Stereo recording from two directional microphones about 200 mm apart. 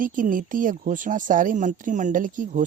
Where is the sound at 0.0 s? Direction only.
40° right (ahead or behind).